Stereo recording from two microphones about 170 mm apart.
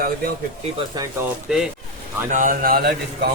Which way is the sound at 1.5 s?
5° right (ahead or behind).